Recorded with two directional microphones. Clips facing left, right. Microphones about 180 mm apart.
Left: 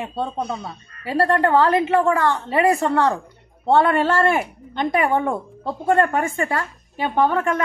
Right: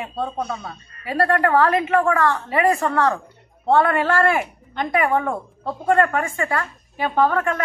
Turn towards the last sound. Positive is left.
turn(degrees=25)  # may be behind; listen again after turning